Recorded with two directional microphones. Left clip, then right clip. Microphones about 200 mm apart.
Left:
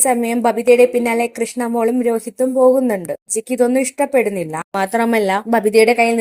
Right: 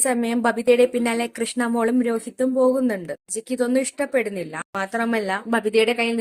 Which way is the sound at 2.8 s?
20° left (ahead or behind).